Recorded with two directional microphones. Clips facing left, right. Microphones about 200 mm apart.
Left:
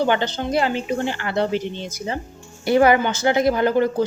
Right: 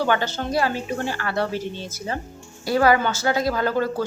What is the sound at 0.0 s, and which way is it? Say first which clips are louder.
Speech: left 2 dB; 20° left (ahead or behind).